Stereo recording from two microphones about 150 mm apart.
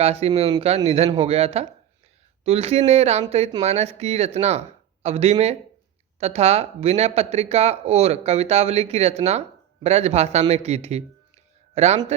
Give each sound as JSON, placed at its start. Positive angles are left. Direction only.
{"t": 0.0, "sound": "speech", "side_deg": -45}